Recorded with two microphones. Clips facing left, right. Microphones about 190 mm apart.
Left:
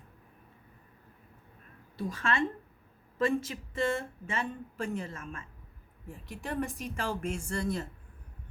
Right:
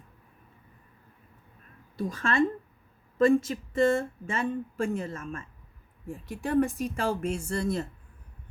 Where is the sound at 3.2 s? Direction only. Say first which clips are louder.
Right 7 dB; 45° right (ahead or behind).